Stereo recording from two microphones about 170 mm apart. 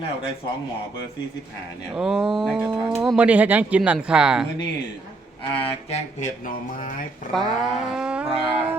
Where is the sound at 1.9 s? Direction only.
5° right (ahead or behind).